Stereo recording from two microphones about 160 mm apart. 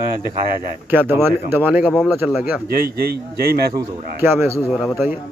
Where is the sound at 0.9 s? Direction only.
15° right (ahead or behind).